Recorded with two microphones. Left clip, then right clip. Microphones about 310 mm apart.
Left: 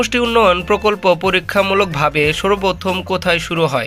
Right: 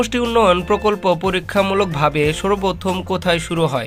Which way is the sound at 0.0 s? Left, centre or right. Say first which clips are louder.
Left 2 dB; centre.